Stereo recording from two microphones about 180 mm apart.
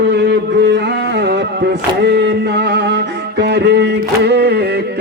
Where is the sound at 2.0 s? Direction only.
70° right (ahead or behind).